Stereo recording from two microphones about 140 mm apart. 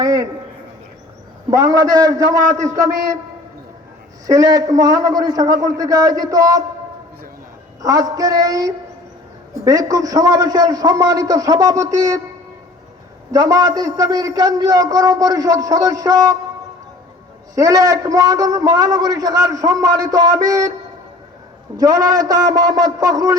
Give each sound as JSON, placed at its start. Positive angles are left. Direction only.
{"t": 0.0, "sound": "a sound", "side_deg": -25}
{"t": 1.5, "sound": "a man's voice", "side_deg": -25}
{"t": 4.3, "sound": "a man's voice", "side_deg": -25}
{"t": 7.8, "sound": "a man's voice", "side_deg": -25}
{"t": 13.3, "sound": "a man's voice", "side_deg": -25}
{"t": 17.5, "sound": "a man's voice", "side_deg": -25}
{"t": 21.8, "sound": "a man's voice", "side_deg": -25}